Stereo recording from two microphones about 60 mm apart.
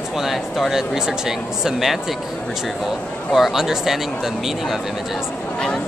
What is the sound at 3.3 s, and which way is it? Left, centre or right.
Speech, centre.